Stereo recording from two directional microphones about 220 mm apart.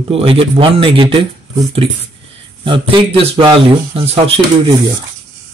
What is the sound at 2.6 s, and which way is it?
Speech, 20° right (ahead or behind).